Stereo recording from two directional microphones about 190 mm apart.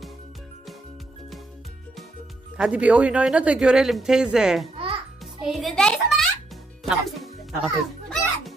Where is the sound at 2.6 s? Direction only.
5° right (ahead or behind).